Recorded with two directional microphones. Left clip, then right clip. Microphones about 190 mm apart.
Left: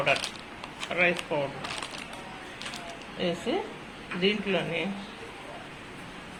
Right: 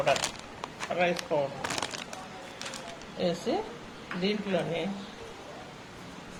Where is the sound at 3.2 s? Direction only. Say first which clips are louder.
Even; 30° right (ahead or behind).